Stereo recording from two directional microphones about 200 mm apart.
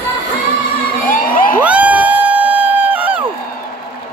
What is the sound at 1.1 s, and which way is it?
Crowd, 45° left (ahead or behind).